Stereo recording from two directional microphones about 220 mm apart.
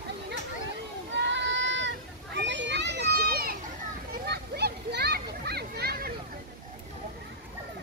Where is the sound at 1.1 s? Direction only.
55° right (ahead or behind).